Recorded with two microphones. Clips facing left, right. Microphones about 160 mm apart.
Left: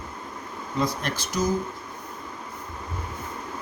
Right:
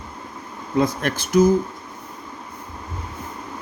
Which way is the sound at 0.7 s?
55° right (ahead or behind).